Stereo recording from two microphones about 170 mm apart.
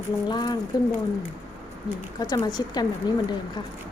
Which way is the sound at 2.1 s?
25° left (ahead or behind).